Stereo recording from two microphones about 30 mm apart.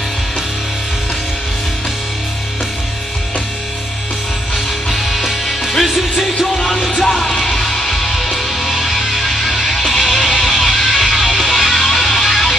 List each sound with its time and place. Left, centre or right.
4.8 s music: centre
6.5 s music: centre